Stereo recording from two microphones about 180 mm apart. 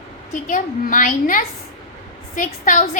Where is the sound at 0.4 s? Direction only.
50° left (ahead or behind).